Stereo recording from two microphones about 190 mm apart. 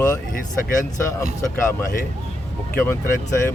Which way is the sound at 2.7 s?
10° left (ahead or behind).